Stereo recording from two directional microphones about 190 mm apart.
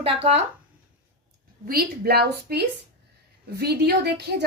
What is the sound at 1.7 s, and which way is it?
A woman's voice, 55° right (ahead or behind).